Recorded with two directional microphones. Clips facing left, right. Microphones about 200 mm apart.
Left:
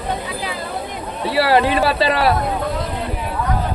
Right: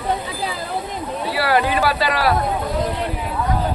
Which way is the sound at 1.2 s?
25° left (ahead or behind).